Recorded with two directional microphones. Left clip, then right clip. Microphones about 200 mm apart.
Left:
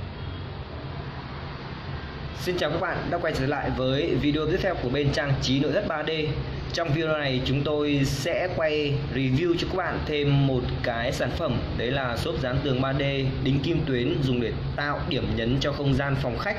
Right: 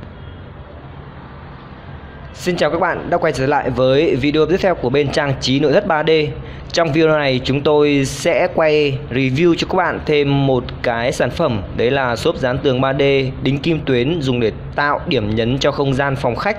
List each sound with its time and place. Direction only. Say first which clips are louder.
2.4 s speech: right 10 dB; 50° right (ahead or behind)